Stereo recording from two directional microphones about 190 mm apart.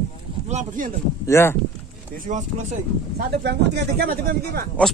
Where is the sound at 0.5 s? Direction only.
45° right (ahead or behind).